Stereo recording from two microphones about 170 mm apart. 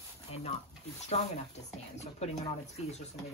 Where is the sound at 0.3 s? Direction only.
40° left (ahead or behind).